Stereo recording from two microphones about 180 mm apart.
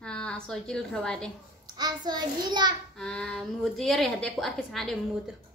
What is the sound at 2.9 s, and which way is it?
A woman's voice, 5° left (ahead or behind).